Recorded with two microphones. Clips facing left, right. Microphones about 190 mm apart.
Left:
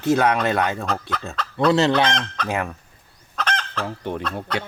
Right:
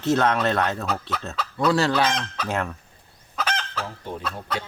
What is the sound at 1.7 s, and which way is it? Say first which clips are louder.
Fowl: left 3 dB; 20° left (ahead or behind).